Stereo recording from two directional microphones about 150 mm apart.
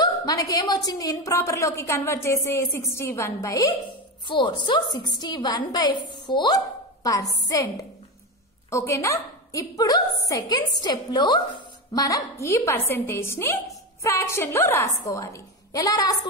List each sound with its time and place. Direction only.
0.0 s a woman's voice: 25° left (ahead or behind)
4.3 s a woman's voice: 30° left (ahead or behind)